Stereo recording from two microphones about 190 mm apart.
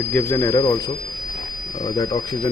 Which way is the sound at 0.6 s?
25° left (ahead or behind).